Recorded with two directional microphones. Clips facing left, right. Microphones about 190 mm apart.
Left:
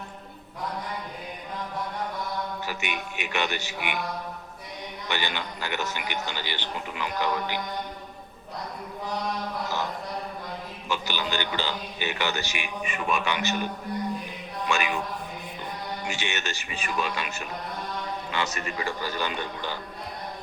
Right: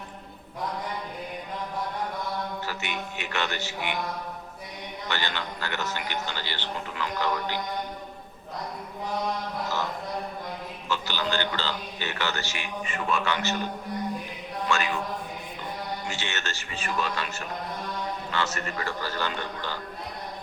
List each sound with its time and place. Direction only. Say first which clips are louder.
2.6 s a man's voice: left 1 dB; 15° left (ahead or behind)
5.0 s a man's voice: left 1 dB; 15° left (ahead or behind)
10.8 s a man's voice: right 1 dB; 15° left (ahead or behind)
14.7 s a man's voice: even; 15° left (ahead or behind)
16.0 s a man's voice: left 2 dB; 15° left (ahead or behind)